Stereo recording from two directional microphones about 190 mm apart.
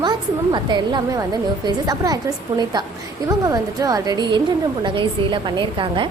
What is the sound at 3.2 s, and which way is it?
A woman's voice, 20° right (ahead or behind).